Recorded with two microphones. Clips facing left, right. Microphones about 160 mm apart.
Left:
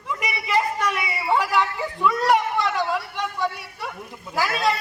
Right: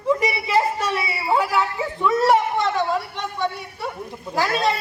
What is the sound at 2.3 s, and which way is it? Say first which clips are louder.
Speech: right 2 dB; 25° right (ahead or behind).